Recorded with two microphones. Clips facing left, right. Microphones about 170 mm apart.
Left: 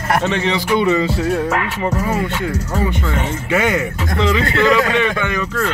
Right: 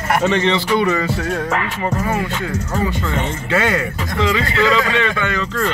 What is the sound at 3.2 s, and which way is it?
A man's voice, 15° left (ahead or behind).